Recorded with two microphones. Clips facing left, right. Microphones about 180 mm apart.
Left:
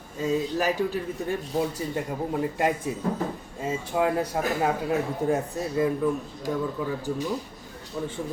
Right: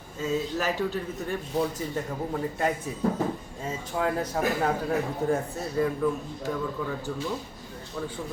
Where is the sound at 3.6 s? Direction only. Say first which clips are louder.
Left 4 dB; 10° left (ahead or behind).